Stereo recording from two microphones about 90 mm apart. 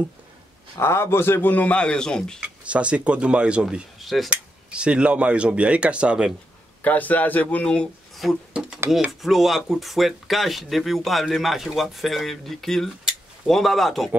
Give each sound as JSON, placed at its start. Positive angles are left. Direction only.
{"t": 0.7, "sound": "a man's voice", "side_deg": 30}
{"t": 2.7, "sound": "speech", "side_deg": -15}
{"t": 4.0, "sound": "a sound", "side_deg": 0}
{"t": 4.6, "sound": "speech", "side_deg": -10}
{"t": 6.8, "sound": "speech", "side_deg": 20}